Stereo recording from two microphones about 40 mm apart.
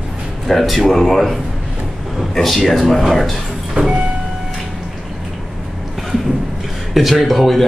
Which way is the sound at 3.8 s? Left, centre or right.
Right.